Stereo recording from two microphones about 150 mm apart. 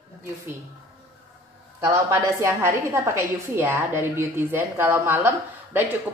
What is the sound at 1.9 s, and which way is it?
A woman's voice, 20° right (ahead or behind).